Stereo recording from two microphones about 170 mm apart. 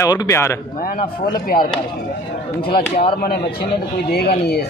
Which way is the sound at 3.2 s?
65° left (ahead or behind).